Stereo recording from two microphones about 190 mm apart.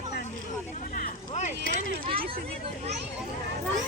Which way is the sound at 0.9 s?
40° left (ahead or behind).